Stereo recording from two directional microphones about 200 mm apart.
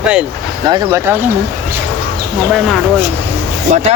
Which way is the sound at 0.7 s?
15° right (ahead or behind).